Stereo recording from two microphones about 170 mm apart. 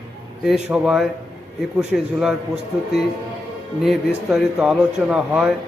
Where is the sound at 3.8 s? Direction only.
Centre (ahead or behind).